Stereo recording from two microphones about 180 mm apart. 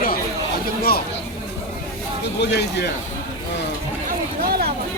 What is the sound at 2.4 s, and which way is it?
Speech, 70° left (ahead or behind).